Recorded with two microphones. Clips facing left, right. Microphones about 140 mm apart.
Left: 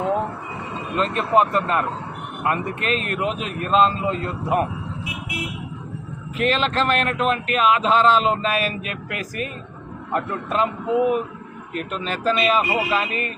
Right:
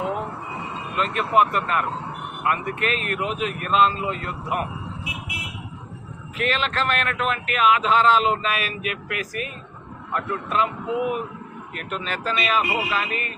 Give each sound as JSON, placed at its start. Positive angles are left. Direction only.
{"t": 0.9, "sound": "speech", "side_deg": 30}
{"t": 6.3, "sound": "speech", "side_deg": 30}